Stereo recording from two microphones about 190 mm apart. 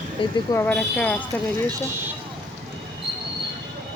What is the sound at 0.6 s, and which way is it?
Speech, 5° left (ahead or behind).